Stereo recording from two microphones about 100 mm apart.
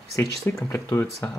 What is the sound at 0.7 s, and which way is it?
Speech, 30° left (ahead or behind).